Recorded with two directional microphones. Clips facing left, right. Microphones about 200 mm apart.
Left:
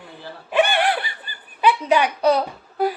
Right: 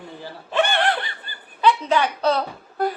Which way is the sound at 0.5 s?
10° left (ahead or behind).